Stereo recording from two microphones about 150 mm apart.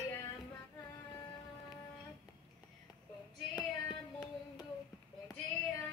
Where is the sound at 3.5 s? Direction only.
25° left (ahead or behind).